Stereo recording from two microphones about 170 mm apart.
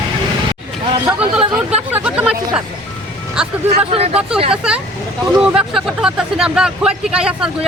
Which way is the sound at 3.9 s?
35° right (ahead or behind).